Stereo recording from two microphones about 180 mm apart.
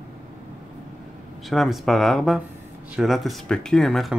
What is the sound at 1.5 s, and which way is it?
Speech, centre (ahead or behind).